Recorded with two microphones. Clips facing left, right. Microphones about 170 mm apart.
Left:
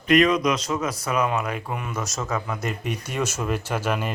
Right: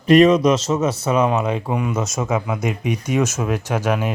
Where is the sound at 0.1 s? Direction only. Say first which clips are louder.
Right 7 dB; 30° right (ahead or behind).